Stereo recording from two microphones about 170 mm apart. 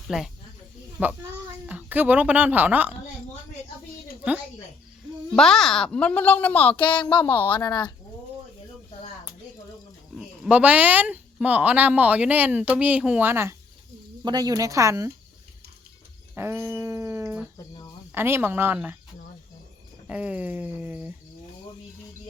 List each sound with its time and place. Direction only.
0.1 s speech: 5° right (ahead or behind)
5.3 s speech: centre (ahead or behind)
6.8 s speech: 30° left (ahead or behind)
7.2 s speech: 10° left (ahead or behind)
7.4 s speech: 25° left (ahead or behind)
10.2 s speech: 5° right (ahead or behind)
16.3 s dog: 15° right (ahead or behind)
18.1 s speech: 15° right (ahead or behind)
20.1 s speech: 5° right (ahead or behind)